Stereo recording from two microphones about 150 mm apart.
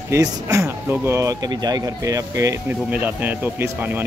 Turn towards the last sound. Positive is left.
turn(degrees=-15)  # may be behind; listen again after turning